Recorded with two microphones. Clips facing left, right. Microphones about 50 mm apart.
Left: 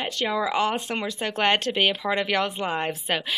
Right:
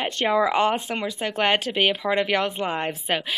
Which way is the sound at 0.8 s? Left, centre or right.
Centre.